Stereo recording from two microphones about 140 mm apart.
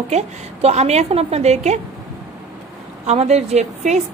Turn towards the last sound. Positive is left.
turn(degrees=-55)  # may be behind; listen again after turning